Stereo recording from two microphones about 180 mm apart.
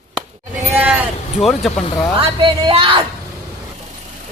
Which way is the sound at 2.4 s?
30° right (ahead or behind).